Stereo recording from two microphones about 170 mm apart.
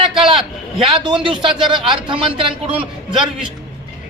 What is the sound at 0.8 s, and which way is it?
A man's voice, 30° right (ahead or behind).